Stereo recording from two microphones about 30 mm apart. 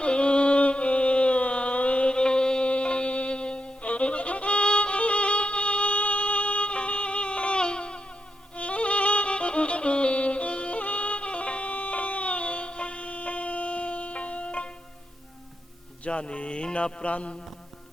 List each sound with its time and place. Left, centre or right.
0.0 s music: left
8.5 s music: left
11.7 s a sound: left
16.0 s music: left
16.7 s mantra: left